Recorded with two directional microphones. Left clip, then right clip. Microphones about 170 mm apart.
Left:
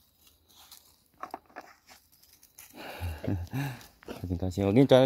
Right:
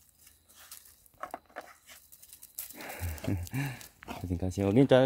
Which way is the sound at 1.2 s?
10° right (ahead or behind).